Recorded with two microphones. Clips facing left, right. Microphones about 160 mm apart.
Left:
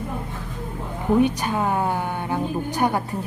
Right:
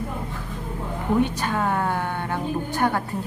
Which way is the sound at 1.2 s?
15° left (ahead or behind).